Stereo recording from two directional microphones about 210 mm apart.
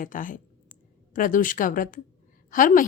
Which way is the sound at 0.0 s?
40° left (ahead or behind).